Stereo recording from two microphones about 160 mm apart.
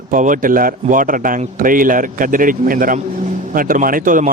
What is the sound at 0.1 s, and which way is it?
Speech, 55° right (ahead or behind).